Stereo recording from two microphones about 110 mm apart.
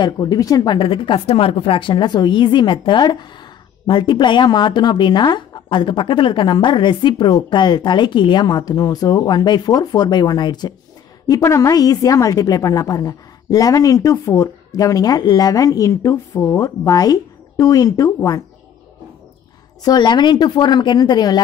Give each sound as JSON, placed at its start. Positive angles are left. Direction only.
{"t": 0.0, "sound": "speech", "side_deg": 35}
{"t": 0.7, "sound": "speech", "side_deg": 50}
{"t": 11.2, "sound": "speech", "side_deg": 30}
{"t": 19.8, "sound": "speech", "side_deg": 40}